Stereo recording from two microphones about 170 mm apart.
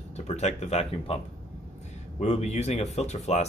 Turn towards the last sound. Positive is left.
turn(degrees=40)  # may be behind; listen again after turning